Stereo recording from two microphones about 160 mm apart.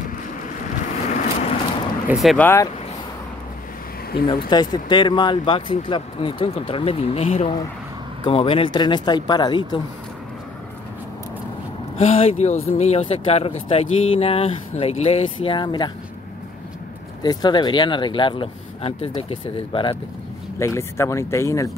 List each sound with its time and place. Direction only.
1.0 s vehicle: 45° left (ahead or behind)
2.2 s speech: 10° left (ahead or behind)
4.3 s speech: 25° left (ahead or behind)
12.0 s speech: 40° left (ahead or behind)
17.2 s speech: 25° left (ahead or behind)
20.5 s speech: 15° left (ahead or behind)